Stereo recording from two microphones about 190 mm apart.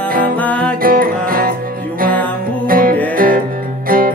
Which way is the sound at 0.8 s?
50° right (ahead or behind).